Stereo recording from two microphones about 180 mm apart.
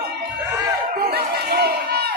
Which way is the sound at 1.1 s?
65° right (ahead or behind).